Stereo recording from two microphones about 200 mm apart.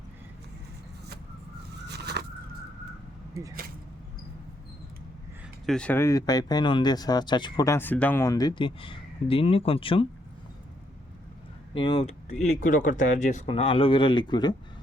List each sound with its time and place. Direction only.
1.9 s a sound: 55° right (ahead or behind)
5.6 s speech: 5° left (ahead or behind); by 10.1 s 25° left (ahead or behind)
11.7 s speech: 25° left (ahead or behind)